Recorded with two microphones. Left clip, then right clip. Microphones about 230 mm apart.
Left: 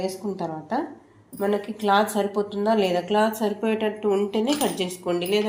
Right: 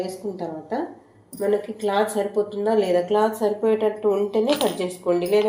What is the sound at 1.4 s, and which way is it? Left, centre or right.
Speech, left.